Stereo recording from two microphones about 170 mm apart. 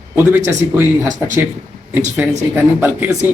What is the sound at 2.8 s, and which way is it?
Speech, 10° right (ahead or behind).